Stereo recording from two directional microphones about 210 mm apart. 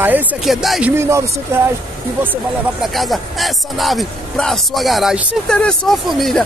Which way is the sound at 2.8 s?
Centre (ahead or behind).